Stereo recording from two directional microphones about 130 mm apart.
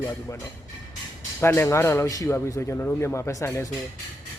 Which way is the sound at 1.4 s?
20° left (ahead or behind).